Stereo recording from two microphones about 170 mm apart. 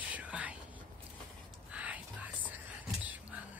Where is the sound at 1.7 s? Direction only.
10° right (ahead or behind).